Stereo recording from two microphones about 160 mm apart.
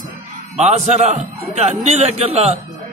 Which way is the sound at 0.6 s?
45° right (ahead or behind).